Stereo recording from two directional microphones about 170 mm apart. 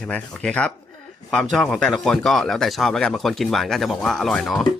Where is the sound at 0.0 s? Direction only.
5° left (ahead or behind).